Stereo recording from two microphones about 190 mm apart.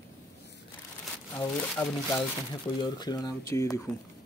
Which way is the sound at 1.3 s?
15° left (ahead or behind).